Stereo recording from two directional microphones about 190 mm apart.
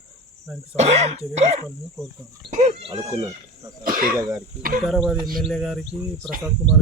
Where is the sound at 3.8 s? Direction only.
50° right (ahead or behind).